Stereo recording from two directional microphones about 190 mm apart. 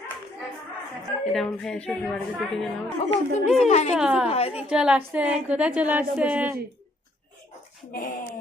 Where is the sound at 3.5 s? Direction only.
35° left (ahead or behind).